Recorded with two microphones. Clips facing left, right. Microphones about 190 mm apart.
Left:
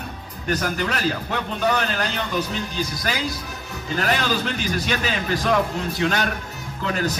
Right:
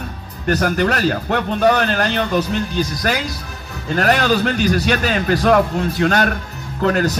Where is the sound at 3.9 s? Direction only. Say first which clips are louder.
Right 7 dB; 65° right (ahead or behind).